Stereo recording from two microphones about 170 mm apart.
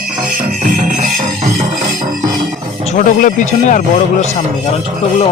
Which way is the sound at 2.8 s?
45° left (ahead or behind).